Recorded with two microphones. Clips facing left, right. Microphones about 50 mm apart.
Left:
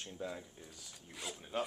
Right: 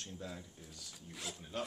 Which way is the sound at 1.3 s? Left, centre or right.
Centre.